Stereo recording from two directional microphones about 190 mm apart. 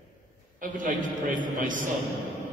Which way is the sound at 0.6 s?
45° right (ahead or behind).